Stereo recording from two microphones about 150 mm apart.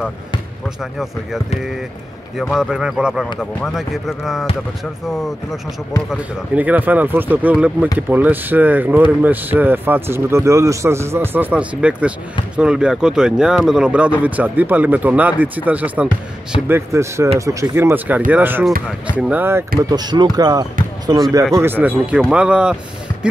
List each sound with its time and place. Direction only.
0.9 s speech: centre (ahead or behind)
19.8 s speech: 25° right (ahead or behind); by 22.8 s 5° right (ahead or behind)